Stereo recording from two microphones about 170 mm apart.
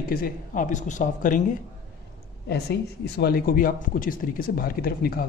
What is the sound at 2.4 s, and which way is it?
A woman's voice, 70° left (ahead or behind).